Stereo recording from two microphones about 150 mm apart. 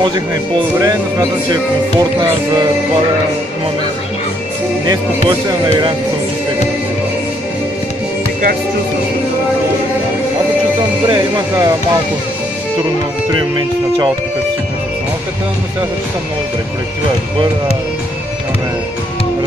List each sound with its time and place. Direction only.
1.5 s music: 25° right (ahead or behind)
5.5 s music: 25° right (ahead or behind)
11.1 s music: 30° right (ahead or behind)
13.3 s speech: 30° right (ahead or behind)